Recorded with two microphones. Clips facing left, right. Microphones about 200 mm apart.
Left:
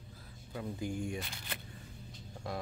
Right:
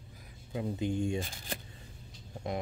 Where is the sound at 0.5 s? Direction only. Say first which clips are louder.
Right 5 dB; 20° right (ahead or behind).